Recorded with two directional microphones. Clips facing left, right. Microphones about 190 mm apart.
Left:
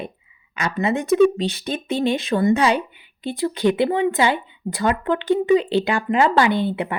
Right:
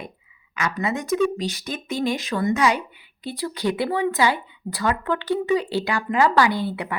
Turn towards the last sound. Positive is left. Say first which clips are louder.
# left 3 dB
turn(degrees=20)  # may be behind; listen again after turning